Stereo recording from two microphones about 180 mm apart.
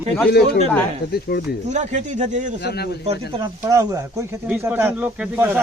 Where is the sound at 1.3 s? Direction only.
65° left (ahead or behind).